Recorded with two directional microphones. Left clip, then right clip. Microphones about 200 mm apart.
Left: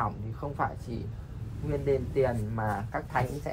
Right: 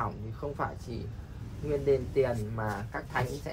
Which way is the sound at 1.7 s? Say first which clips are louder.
Right 1 dB; 5° left (ahead or behind).